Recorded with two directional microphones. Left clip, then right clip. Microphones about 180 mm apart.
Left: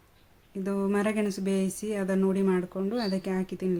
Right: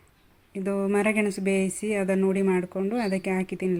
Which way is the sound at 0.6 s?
10° right (ahead or behind).